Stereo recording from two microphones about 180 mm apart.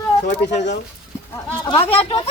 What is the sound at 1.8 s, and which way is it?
Speech, 30° left (ahead or behind).